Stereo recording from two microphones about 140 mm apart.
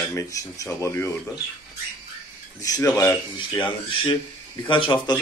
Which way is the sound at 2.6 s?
25° left (ahead or behind).